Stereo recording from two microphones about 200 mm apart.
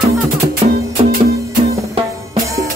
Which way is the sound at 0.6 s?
30° right (ahead or behind).